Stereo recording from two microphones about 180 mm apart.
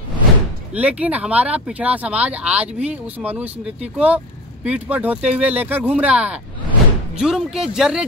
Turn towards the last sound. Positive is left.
turn(degrees=-5)  # may be behind; listen again after turning